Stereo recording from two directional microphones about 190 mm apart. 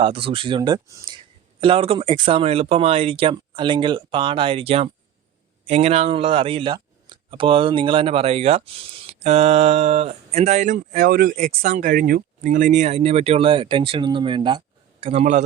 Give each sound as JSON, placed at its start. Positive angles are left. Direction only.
{"t": 0.0, "sound": "speech", "side_deg": -30}
{"t": 15.0, "sound": "speech", "side_deg": -35}